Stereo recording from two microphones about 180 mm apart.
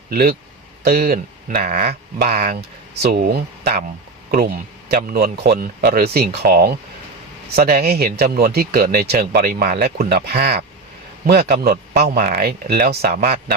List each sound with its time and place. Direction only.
0.1 s speech: 55° right (ahead or behind)